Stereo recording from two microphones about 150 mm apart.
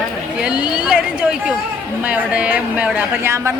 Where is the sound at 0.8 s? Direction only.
5° right (ahead or behind).